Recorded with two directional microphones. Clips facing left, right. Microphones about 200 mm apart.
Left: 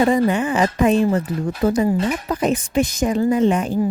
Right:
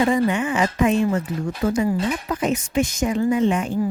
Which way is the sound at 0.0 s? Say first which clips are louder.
Left 3 dB; 35° left (ahead or behind).